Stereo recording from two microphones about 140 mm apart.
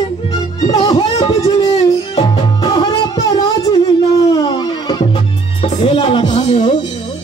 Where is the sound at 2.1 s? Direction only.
30° left (ahead or behind).